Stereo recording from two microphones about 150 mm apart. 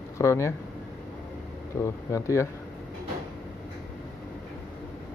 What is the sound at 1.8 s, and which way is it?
Speech, 20° left (ahead or behind).